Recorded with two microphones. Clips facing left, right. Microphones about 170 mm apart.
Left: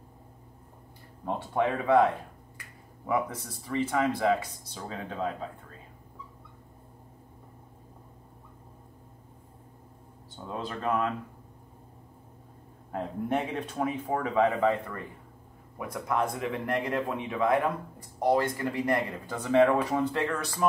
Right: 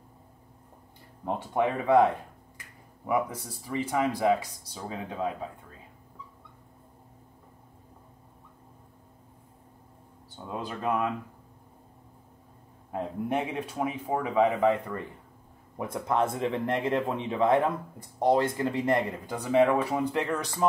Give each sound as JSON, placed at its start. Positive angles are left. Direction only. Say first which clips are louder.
{"t": 1.2, "sound": "speech", "louder": "right 1 dB", "side_deg": -20}
{"t": 3.1, "sound": "speech", "louder": "right 1 dB", "side_deg": -10}
{"t": 10.3, "sound": "speech", "louder": "even", "side_deg": -10}
{"t": 12.9, "sound": "speech", "louder": "even", "side_deg": -10}
{"t": 15.9, "sound": "speech", "louder": "right 2 dB", "side_deg": -25}
{"t": 19.2, "sound": "speech", "louder": "left 1 dB", "side_deg": -10}